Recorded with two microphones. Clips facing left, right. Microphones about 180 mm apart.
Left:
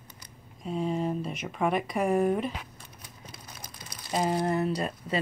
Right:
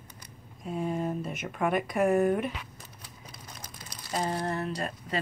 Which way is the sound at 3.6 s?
15° left (ahead or behind).